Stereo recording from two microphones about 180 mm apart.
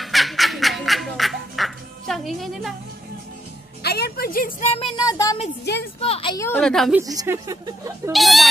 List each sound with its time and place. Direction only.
0.0 s music: centre (ahead or behind)
3.8 s a sound: 60° left (ahead or behind)
4.6 s speech: 30° left (ahead or behind)
5.9 s a woman's voice: 35° left (ahead or behind)
6.3 s a woman's voice: 15° left (ahead or behind)
6.6 s speech: centre (ahead or behind)
7.0 s a woman's voice: 15° right (ahead or behind)
8.1 s speech: centre (ahead or behind)